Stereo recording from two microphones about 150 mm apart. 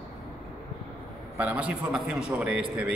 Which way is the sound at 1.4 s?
10° right (ahead or behind).